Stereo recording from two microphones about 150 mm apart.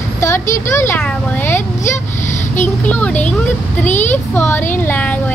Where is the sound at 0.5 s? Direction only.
20° left (ahead or behind).